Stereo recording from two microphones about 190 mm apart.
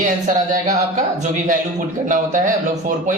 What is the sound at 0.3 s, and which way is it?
Speech, 40° right (ahead or behind).